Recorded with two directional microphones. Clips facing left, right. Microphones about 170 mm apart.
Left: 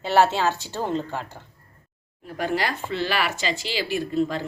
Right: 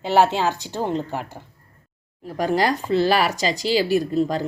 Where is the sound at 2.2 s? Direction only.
40° right (ahead or behind).